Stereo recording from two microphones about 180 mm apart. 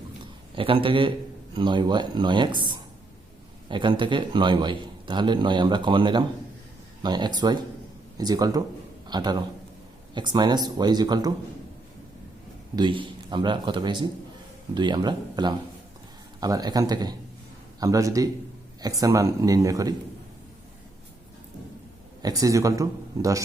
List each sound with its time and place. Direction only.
0.2 s a sound: 30° right (ahead or behind)
1.5 s a man's voice: 25° right (ahead or behind)
12.7 s a man's voice: 25° right (ahead or behind)
22.2 s a man's voice: 20° right (ahead or behind)